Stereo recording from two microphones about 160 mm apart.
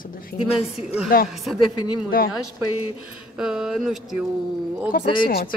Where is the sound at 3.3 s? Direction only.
5° right (ahead or behind).